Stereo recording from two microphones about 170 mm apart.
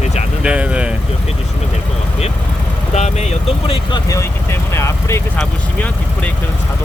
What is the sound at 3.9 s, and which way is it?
Speech, 20° left (ahead or behind).